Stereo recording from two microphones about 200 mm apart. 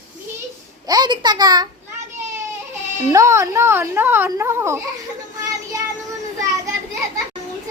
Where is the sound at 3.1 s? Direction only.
15° right (ahead or behind).